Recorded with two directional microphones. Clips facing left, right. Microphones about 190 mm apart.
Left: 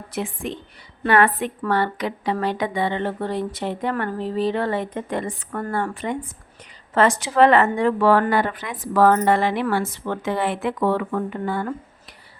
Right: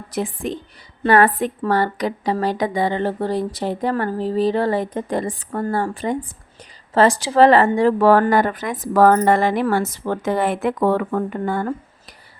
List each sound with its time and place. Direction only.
0.1 s a woman's voice: 40° right (ahead or behind)